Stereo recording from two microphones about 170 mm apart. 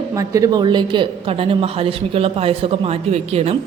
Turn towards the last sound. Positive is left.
turn(degrees=-40)  # may be behind; listen again after turning